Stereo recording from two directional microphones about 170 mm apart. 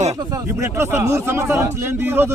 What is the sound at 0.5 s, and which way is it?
A man's voice, 15° right (ahead or behind).